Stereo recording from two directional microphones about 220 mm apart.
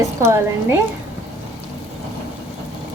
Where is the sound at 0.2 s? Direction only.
10° right (ahead or behind).